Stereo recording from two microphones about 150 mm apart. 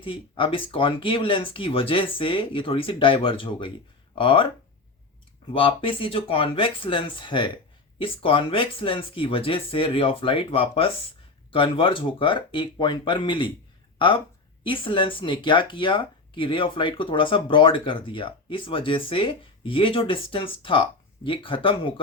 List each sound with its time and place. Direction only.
0.0 s speech: 35° left (ahead or behind)
5.5 s speech: 35° left (ahead or behind)